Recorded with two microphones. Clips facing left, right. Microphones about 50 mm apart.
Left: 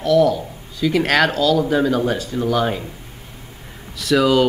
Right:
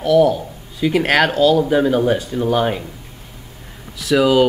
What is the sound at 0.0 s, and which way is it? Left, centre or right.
Speech, centre.